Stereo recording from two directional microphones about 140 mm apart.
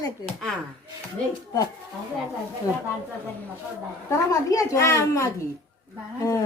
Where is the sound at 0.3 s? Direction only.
5° left (ahead or behind).